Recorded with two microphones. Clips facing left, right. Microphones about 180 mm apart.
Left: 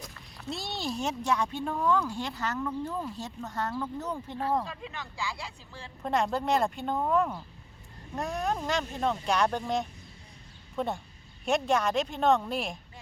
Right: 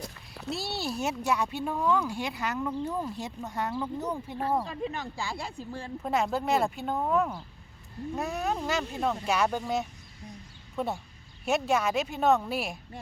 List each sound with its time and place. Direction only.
0.5 s speech: 5° right (ahead or behind)
4.7 s speech: 45° right (ahead or behind)
6.0 s speech: 5° right (ahead or behind)